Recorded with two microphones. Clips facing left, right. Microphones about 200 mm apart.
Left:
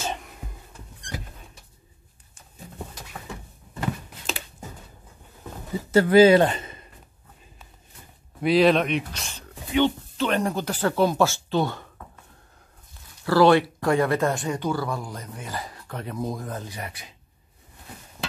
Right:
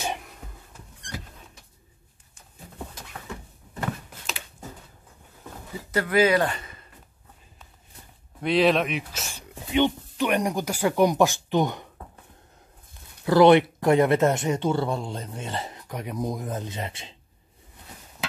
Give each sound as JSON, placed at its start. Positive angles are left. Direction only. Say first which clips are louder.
{"t": 0.0, "sound": "a sound", "louder": "even", "side_deg": -10}
{"t": 5.9, "sound": "speech", "louder": "left 7 dB", "side_deg": 30}
{"t": 8.4, "sound": "speech", "louder": "left 2 dB", "side_deg": 0}
{"t": 13.2, "sound": "speech", "louder": "right 2 dB", "side_deg": -20}